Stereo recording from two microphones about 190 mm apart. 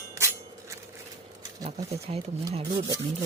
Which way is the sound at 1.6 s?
35° right (ahead or behind).